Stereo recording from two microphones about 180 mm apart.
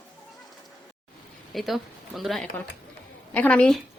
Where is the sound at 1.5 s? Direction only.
Centre (ahead or behind).